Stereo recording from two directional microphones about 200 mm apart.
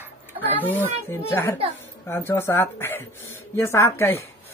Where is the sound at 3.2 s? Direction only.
85° left.